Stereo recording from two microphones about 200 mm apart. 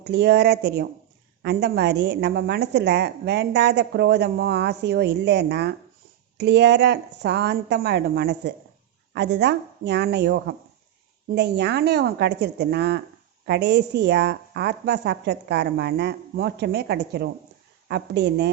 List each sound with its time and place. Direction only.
0.0 s a woman's voice: 55° right (ahead or behind)